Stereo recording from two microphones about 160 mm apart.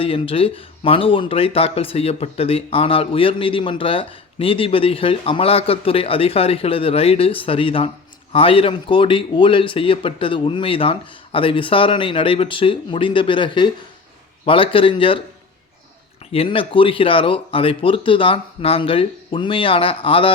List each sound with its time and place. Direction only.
0.0 s speech: 35° left (ahead or behind)
16.3 s speech: 35° left (ahead or behind)